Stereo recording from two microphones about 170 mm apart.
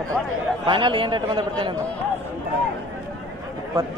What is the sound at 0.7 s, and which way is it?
A man's voice, 30° right (ahead or behind).